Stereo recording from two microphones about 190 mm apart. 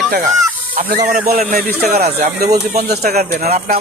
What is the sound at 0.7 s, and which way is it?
Speech, 50° right (ahead or behind).